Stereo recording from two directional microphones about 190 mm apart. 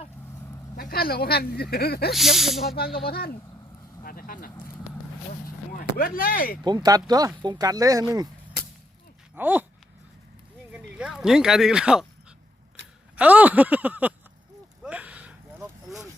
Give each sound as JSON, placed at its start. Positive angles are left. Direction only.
{"t": 0.8, "sound": "speech", "side_deg": 50}
{"t": 2.1, "sound": "speech", "side_deg": 0}
{"t": 2.7, "sound": "speech", "side_deg": 55}
{"t": 5.7, "sound": "speech", "side_deg": 50}
{"t": 6.7, "sound": "speech", "side_deg": -20}
{"t": 9.3, "sound": "speech", "side_deg": -10}
{"t": 10.7, "sound": "speech", "side_deg": -5}
{"t": 13.1, "sound": "speech", "side_deg": -10}
{"t": 14.8, "sound": "a sound", "side_deg": -5}